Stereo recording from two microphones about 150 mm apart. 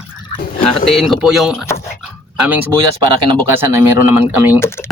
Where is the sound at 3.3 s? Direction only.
25° right (ahead or behind).